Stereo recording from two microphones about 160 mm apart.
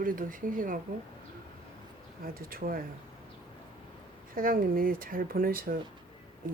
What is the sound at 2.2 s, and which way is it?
Speech, 65° right (ahead or behind).